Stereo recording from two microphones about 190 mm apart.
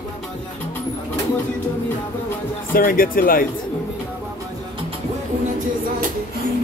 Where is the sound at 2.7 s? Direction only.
50° left (ahead or behind).